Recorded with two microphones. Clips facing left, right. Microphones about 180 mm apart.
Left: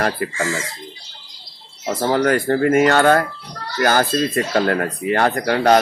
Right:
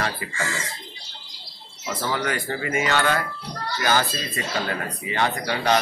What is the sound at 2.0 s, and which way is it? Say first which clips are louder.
Speech: left 10 dB; 45° left (ahead or behind).